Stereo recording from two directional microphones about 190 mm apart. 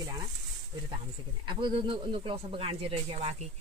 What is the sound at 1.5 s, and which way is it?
Speech, 25° right (ahead or behind).